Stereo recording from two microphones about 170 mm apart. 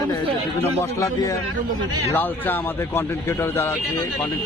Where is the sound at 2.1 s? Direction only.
10° left (ahead or behind).